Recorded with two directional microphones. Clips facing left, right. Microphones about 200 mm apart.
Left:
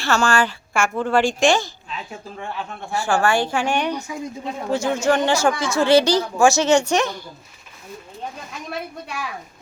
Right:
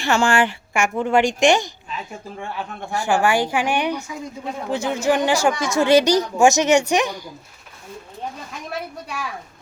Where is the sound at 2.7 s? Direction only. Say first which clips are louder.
Right 1 dB; 20° right (ahead or behind).